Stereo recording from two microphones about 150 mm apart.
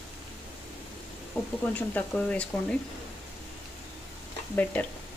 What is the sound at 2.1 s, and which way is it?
Speech, 5° left (ahead or behind).